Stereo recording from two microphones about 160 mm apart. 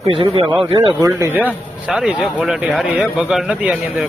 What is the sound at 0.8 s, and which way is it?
Speech, 20° right (ahead or behind).